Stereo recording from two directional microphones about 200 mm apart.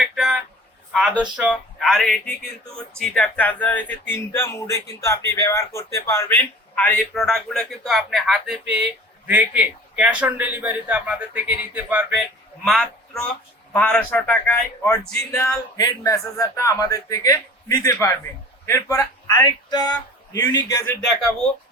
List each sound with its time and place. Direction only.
0.0 s a sound: 5° right (ahead or behind)
1.2 s a man's voice: 5° right (ahead or behind)
15.2 s a man's voice: 15° left (ahead or behind)
21.1 s a man's voice: 5° left (ahead or behind)